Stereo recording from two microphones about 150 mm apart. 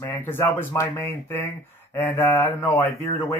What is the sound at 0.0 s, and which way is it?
Speech, 15° left (ahead or behind).